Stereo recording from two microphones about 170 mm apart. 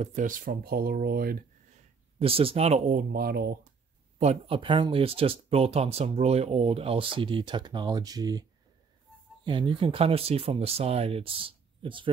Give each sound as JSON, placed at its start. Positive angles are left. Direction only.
{"t": 0.0, "sound": "speech", "side_deg": -50}
{"t": 2.1, "sound": "speech", "side_deg": -35}
{"t": 4.2, "sound": "speech", "side_deg": -40}
{"t": 4.6, "sound": "speech", "side_deg": -30}